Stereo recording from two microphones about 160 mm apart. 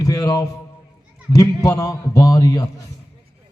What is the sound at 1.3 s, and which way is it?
A man's voice, 20° left (ahead or behind).